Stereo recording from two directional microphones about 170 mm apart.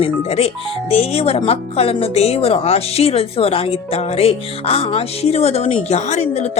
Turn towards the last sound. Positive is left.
turn(degrees=40)  # may be behind; listen again after turning